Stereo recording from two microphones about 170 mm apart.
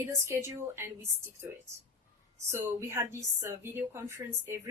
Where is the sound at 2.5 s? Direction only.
15° right (ahead or behind).